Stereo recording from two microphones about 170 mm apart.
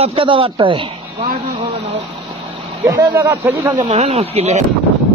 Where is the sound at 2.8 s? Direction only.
20° right (ahead or behind).